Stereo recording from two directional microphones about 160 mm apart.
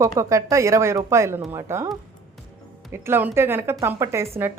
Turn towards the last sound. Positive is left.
turn(degrees=-15)  # may be behind; listen again after turning